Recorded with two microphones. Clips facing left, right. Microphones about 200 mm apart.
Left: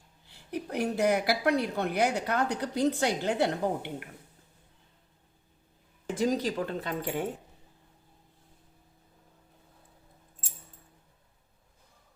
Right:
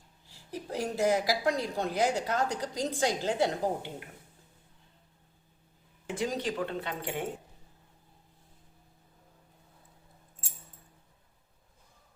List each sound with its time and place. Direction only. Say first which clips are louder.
0.3 s a woman's voice: left 3 dB; 65° left (ahead or behind)
6.1 s speech: left 4 dB; 40° left (ahead or behind)